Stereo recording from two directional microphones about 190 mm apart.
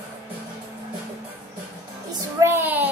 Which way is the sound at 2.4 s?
10° right (ahead or behind).